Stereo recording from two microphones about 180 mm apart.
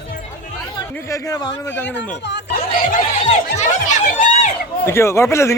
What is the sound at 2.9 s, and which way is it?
Speech, 40° left (ahead or behind).